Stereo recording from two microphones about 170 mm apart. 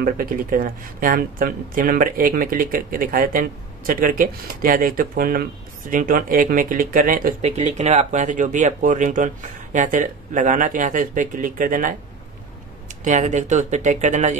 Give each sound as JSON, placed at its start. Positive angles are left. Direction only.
{"t": 0.0, "sound": "speech", "side_deg": -55}
{"t": 13.0, "sound": "speech", "side_deg": -45}